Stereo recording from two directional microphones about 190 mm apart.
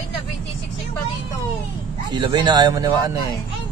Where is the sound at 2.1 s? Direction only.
25° right (ahead or behind).